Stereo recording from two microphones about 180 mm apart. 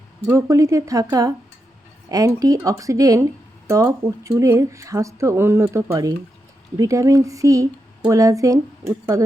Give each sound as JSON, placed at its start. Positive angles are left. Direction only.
{"t": 0.3, "sound": "speech", "side_deg": -15}